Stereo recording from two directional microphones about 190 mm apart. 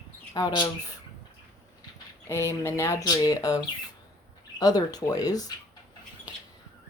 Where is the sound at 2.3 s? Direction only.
15° left (ahead or behind).